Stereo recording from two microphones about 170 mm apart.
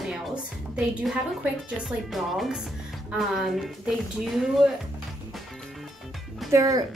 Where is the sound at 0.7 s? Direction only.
5° right (ahead or behind).